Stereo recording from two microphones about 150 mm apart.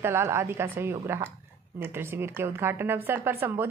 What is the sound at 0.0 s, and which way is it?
A woman's voice, 15° right (ahead or behind).